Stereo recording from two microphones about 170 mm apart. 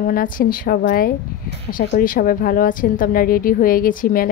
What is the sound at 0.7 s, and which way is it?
Speech, 60° left (ahead or behind).